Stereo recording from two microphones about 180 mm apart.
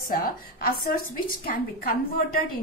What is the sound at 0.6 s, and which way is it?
Speech, 55° left (ahead or behind).